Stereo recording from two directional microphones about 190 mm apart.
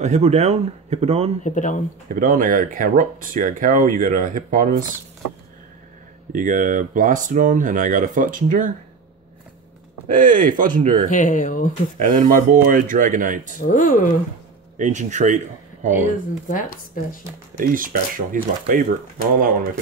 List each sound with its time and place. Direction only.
0.0 s speech: 35° right (ahead or behind)
1.4 s speech: 40° left (ahead or behind)
2.0 s speech: 50° right (ahead or behind)
6.3 s speech: 45° right (ahead or behind)
10.0 s speech: 45° right (ahead or behind)
11.1 s speech: 40° left (ahead or behind)
12.0 s speech: 45° right (ahead or behind)
13.7 s speech: 45° left (ahead or behind)
14.8 s speech: 40° right (ahead or behind)
16.4 s speech: 45° left (ahead or behind)
17.6 s speech: 45° right (ahead or behind)